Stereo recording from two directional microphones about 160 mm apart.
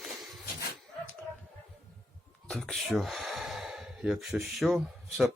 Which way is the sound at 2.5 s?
5° left (ahead or behind).